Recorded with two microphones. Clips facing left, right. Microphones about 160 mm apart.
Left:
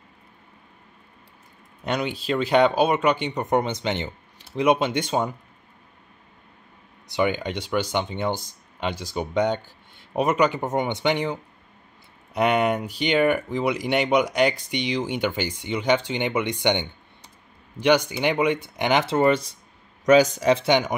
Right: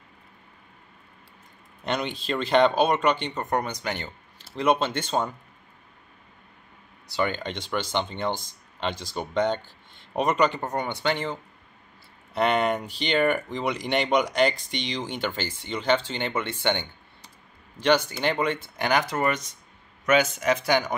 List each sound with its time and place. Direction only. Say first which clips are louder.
1.9 s speech: left 3 dB; 5° left (ahead or behind)
7.1 s speech: left 4 dB; 15° left (ahead or behind)
10.6 s speech: left 4 dB; 20° left (ahead or behind)
12.4 s speech: left 2 dB; 10° left (ahead or behind)